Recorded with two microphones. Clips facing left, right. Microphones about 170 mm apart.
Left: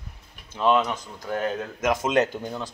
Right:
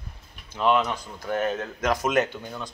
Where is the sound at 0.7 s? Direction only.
15° left (ahead or behind).